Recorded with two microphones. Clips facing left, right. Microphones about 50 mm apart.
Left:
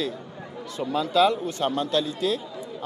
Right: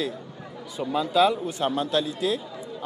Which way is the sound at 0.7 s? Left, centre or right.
Centre.